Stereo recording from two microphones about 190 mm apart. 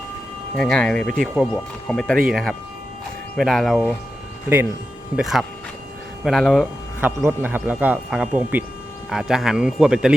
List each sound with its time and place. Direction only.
0.5 s speech: 5° left (ahead or behind)
5.1 s speech: centre (ahead or behind)
7.3 s speech: 10° right (ahead or behind)